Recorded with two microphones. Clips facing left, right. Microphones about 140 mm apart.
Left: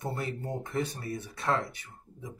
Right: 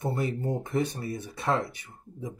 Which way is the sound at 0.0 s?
15° right (ahead or behind).